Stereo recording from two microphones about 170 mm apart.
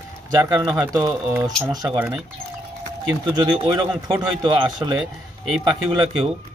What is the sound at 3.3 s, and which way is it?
Speech, 30° right (ahead or behind).